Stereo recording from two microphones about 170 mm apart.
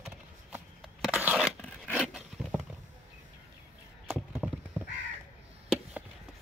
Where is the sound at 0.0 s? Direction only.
Centre (ahead or behind).